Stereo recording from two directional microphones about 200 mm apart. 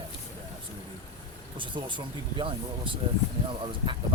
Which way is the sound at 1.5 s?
25° right (ahead or behind).